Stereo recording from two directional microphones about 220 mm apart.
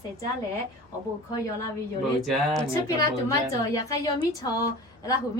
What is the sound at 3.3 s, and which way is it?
A woman's voice, 15° left (ahead or behind).